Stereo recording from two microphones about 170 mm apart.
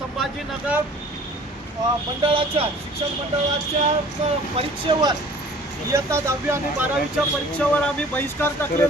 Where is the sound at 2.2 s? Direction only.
30° right (ahead or behind).